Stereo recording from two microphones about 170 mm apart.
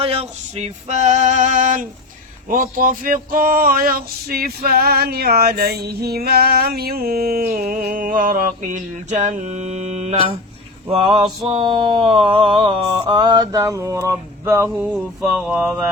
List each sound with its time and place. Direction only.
0.0 s male singing: 35° right (ahead or behind)
2.5 s a sound: 55° right (ahead or behind); by 10.3 s 35° right (ahead or behind)
10.8 s male singing: 35° right (ahead or behind)
11.4 s mantra: 30° right (ahead or behind); by 15.7 s 5° right (ahead or behind)